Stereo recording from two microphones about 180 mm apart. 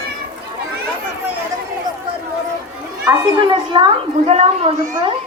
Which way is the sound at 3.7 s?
25° right (ahead or behind).